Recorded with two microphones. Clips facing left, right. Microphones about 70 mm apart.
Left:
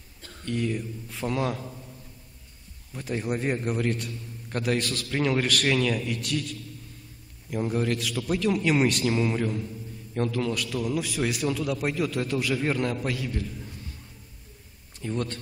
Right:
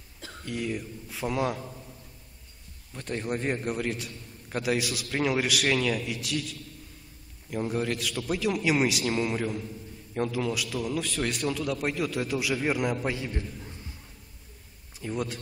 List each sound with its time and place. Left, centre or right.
0.2 s a man's voice: centre
2.9 s a man's voice: centre
13.1 s a man's voice: right
15.0 s speech: centre